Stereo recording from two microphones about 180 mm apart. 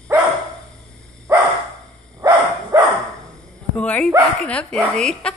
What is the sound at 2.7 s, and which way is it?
Dog, 20° right (ahead or behind).